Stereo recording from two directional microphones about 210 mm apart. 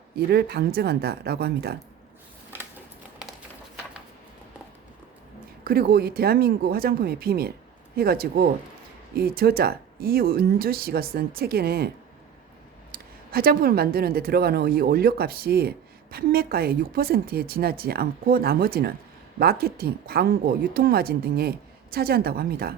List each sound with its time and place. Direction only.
0.3 s speech: 50° right (ahead or behind)
5.6 s speech: 45° right (ahead or behind)
13.3 s speech: 45° right (ahead or behind)